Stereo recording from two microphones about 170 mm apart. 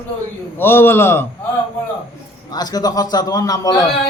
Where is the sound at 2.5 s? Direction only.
25° left (ahead or behind).